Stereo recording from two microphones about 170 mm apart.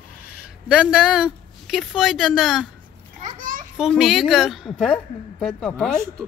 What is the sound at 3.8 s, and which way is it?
A woman's voice, centre (ahead or behind).